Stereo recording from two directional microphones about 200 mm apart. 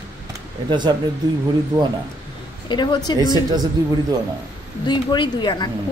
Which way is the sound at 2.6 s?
25° left (ahead or behind).